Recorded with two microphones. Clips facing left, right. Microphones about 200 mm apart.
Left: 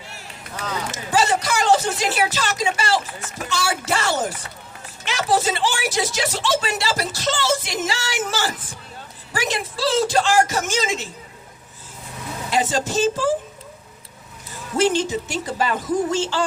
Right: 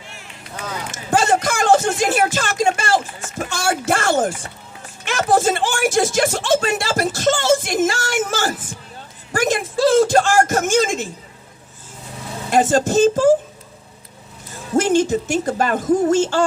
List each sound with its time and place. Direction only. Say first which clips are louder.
0.9 s speech: right 3 dB; 50° right (ahead or behind)
12.5 s speech: right 6 dB; 50° right (ahead or behind)
14.8 s speech: right 4 dB; 50° right (ahead or behind)